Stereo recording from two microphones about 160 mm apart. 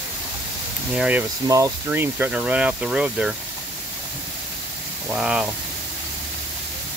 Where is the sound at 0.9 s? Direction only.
5° right (ahead or behind).